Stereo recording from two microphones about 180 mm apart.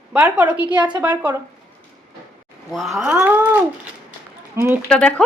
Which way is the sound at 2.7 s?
Centre (ahead or behind).